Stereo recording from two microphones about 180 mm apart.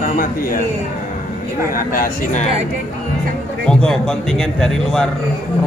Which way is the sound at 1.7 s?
50° left (ahead or behind).